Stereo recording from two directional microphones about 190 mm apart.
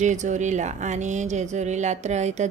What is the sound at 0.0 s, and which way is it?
Speech, 40° right (ahead or behind).